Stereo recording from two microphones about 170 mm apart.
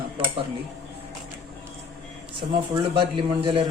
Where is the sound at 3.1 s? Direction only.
30° right (ahead or behind).